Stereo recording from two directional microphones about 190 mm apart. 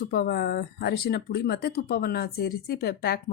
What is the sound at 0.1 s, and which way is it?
Speech, 55° left (ahead or behind).